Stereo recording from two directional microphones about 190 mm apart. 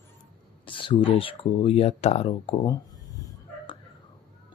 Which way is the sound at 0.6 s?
25° left (ahead or behind).